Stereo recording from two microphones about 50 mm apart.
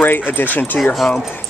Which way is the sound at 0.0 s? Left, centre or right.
Left.